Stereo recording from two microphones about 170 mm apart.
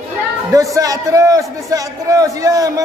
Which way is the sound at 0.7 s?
20° right (ahead or behind).